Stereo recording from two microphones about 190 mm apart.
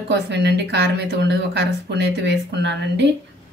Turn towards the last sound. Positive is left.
turn(degrees=-65)  # may be behind; listen again after turning